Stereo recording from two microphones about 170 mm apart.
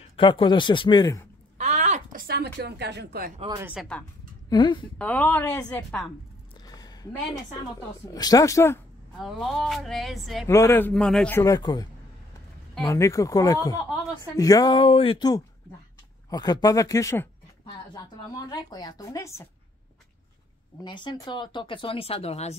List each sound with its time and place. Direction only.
0.1 s speech: 30° left (ahead or behind)
1.6 s a sound: 40° right (ahead or behind)
2.2 s a woman's voice: 70° right (ahead or behind)
3.8 s speech: centre (ahead or behind)
4.5 s speech: 25° left (ahead or behind)
4.9 s speech: 10° left (ahead or behind)
6.6 s a sound: 20° left (ahead or behind)
8.1 s speech: 20° left (ahead or behind)
9.2 s speech: centre (ahead or behind)
10.4 s speech: 15° left (ahead or behind)
11.3 s speech: 20° left (ahead or behind)
18.3 s speech: 25° left (ahead or behind)
20.8 s speech: 25° left (ahead or behind)